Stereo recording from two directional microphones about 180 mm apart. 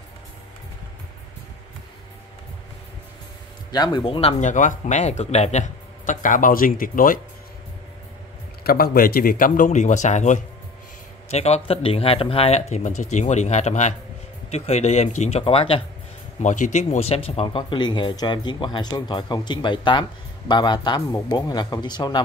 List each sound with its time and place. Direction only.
3.7 s speech: 25° left (ahead or behind); by 7.2 s 50° left (ahead or behind)
8.6 s speech: 55° left (ahead or behind); by 15.8 s 30° left (ahead or behind)
16.4 s speech: 45° left (ahead or behind); by 22.2 s 25° left (ahead or behind)